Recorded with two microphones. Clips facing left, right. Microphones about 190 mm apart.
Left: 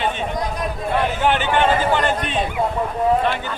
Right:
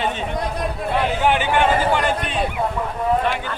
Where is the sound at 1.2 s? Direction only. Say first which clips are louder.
Even; 10° right (ahead or behind).